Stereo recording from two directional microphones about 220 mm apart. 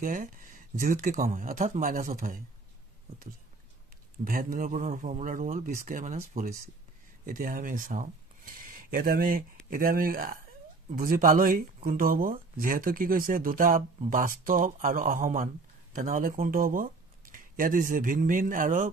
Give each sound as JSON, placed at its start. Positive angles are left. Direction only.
{"t": 0.0, "sound": "speech", "side_deg": -35}
{"t": 4.2, "sound": "speech", "side_deg": -40}